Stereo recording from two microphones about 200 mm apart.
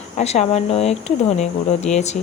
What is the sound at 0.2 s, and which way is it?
Speech, 35° left (ahead or behind).